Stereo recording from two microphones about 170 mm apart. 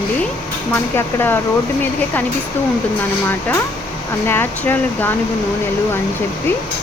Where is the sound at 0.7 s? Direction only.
15° left (ahead or behind).